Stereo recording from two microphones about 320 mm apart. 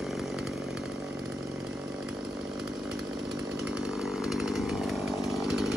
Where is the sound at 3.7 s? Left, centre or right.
Centre.